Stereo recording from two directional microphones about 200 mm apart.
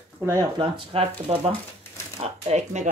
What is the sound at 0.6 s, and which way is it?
Speech, 25° right (ahead or behind).